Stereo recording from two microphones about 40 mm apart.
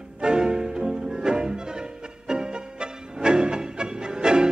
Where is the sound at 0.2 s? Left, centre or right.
Centre.